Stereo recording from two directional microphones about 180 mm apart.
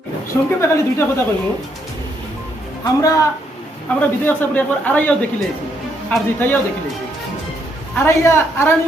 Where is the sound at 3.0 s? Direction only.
20° left (ahead or behind).